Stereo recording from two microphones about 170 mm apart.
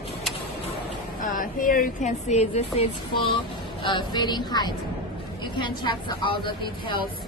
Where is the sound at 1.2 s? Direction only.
55° left (ahead or behind); by 4.7 s 25° left (ahead or behind).